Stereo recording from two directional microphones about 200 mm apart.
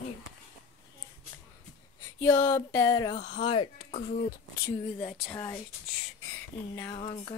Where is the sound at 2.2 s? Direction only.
15° left (ahead or behind).